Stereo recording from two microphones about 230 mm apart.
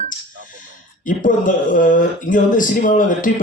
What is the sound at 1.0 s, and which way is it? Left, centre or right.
Speech, left.